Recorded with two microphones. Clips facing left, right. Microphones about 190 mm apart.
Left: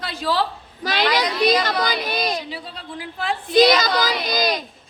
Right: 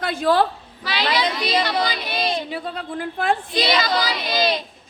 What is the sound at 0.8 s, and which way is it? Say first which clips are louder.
Speech: left 2 dB; 45° left (ahead or behind).